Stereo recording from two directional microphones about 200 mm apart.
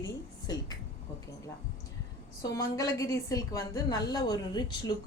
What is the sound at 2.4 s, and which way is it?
A woman's voice, 15° left (ahead or behind).